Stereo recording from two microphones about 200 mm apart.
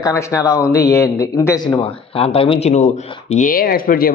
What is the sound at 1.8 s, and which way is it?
Speech, 30° left (ahead or behind).